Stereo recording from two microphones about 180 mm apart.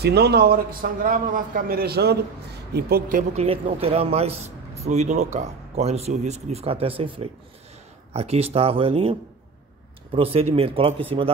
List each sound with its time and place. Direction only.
0.0 s a man's voice: 65° right (ahead or behind); by 3.4 s 50° right (ahead or behind)
3.4 s speech: 30° right (ahead or behind)
10.1 s speech: 30° right (ahead or behind)